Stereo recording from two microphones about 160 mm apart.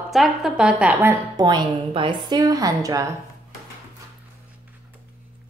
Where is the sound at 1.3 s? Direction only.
25° right (ahead or behind).